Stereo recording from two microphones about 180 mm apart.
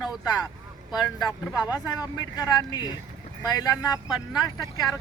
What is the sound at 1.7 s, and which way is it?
Speech, 20° left (ahead or behind).